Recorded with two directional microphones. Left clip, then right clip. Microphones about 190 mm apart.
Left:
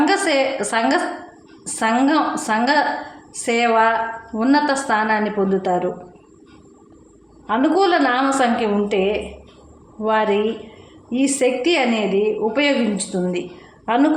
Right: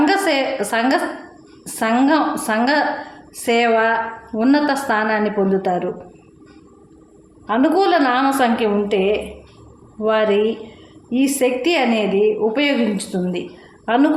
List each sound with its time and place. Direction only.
0.0 s a sound: 10° right (ahead or behind)
1.6 s a woman's voice: 15° right (ahead or behind)
7.4 s a woman's voice: 15° right (ahead or behind)